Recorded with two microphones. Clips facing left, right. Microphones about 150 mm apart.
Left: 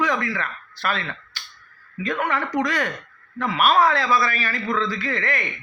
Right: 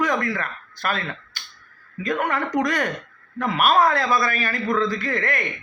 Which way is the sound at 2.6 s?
45° right (ahead or behind).